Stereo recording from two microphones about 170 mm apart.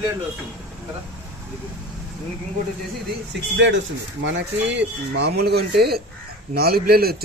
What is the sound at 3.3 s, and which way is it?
A man's voice, 90° right.